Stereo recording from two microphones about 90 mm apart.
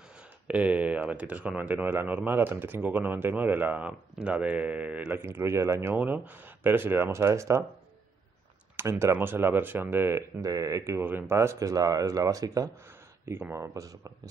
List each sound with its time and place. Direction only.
0.5 s speech: 15° right (ahead or behind); by 7.6 s 35° right (ahead or behind)
8.7 s speech: 30° right (ahead or behind)
10.4 s speech: 40° right (ahead or behind)
13.4 s speech: 30° right (ahead or behind)